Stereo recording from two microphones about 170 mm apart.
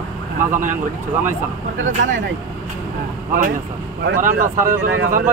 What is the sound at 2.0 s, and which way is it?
Speech, 90° right.